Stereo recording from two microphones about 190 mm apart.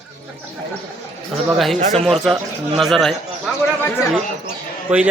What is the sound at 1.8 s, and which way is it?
Speech, 35° right (ahead or behind).